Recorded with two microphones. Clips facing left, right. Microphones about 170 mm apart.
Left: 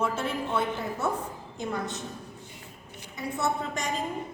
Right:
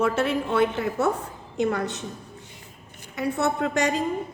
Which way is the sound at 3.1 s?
70° right (ahead or behind).